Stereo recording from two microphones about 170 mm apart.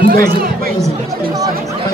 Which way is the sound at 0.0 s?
60° right (ahead or behind).